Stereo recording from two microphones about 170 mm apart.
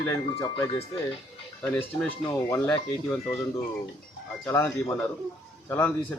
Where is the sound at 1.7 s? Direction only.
10° left (ahead or behind).